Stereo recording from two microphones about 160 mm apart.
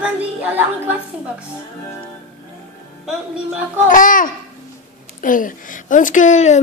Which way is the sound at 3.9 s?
55° left (ahead or behind).